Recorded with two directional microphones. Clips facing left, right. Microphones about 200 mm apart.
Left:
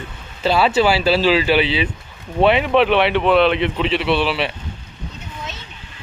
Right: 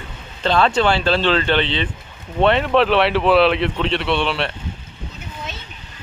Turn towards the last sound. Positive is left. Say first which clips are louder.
# left 2 dB
turn(degrees=5)  # may be behind; listen again after turning